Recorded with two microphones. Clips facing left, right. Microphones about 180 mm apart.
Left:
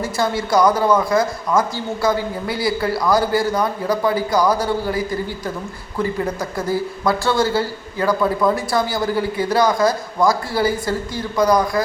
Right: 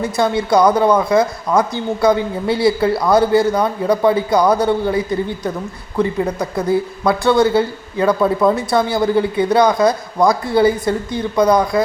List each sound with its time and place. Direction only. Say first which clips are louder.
0.0 s speech: right 4 dB; 20° right (ahead or behind)
6.7 s speech: right 3 dB; 20° right (ahead or behind)